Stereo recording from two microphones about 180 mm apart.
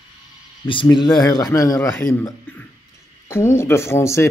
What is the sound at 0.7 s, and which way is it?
A man's voice, 25° left (ahead or behind).